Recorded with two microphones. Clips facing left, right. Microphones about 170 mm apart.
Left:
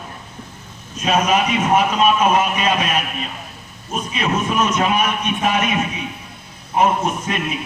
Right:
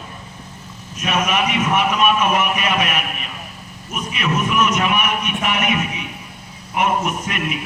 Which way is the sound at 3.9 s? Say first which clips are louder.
Left 1 dB; 30° left (ahead or behind).